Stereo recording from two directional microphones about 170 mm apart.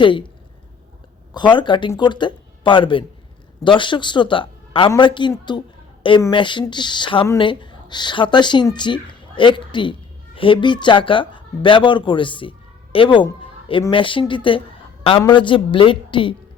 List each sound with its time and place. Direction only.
0.0 s a man's voice: 30° left (ahead or behind)
1.3 s a man's voice: 25° left (ahead or behind)
5.5 s a sound: 30° left (ahead or behind)
6.3 s a man's voice: 30° left (ahead or behind)